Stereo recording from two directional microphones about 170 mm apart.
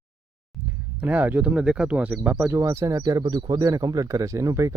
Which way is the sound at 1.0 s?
10° right (ahead or behind).